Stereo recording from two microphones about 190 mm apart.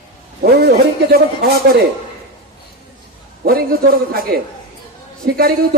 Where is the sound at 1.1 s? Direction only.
50° right (ahead or behind).